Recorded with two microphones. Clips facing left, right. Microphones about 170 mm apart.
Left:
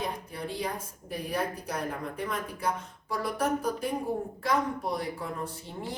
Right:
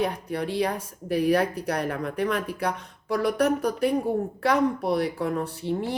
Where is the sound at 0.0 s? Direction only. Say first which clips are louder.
Right 8 dB; 70° right (ahead or behind).